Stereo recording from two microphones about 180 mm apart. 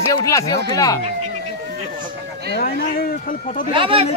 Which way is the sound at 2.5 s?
60° left (ahead or behind).